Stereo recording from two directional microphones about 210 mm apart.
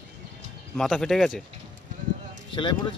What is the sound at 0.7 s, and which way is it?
Speech, centre (ahead or behind).